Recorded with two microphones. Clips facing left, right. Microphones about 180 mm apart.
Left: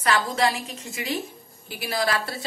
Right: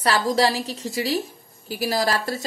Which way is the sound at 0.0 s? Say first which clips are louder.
Right 3 dB; 35° right (ahead or behind).